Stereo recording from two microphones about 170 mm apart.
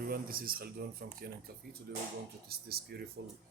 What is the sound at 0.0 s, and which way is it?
Speech, 60° right (ahead or behind).